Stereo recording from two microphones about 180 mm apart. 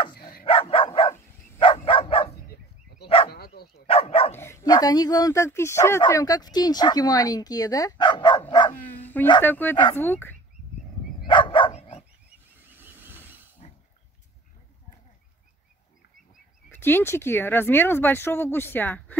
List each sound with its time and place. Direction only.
0.1 s dog: 55° left (ahead or behind)
0.5 s dog: 30° left (ahead or behind)
3.3 s dog: 60° left (ahead or behind)
3.7 s dog: 30° left (ahead or behind)
4.4 s speech: 15° left (ahead or behind)
9.0 s dog: 10° left (ahead or behind)
9.4 s speech: 10° left (ahead or behind)
11.2 s dog: 25° left (ahead or behind)
12.6 s vehicle: 10° right (ahead or behind)
13.6 s pig: 40° left (ahead or behind)
16.7 s speech: 10° left (ahead or behind)